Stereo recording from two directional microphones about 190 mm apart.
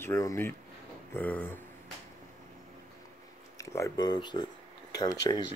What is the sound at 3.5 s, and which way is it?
Speech, 15° left (ahead or behind).